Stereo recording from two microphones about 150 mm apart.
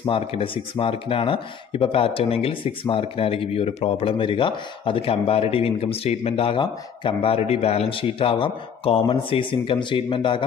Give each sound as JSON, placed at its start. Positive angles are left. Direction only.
{"t": 0.0, "sound": "speech", "side_deg": 40}